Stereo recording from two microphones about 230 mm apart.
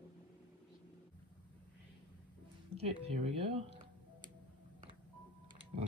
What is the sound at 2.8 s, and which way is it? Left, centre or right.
Speech, right.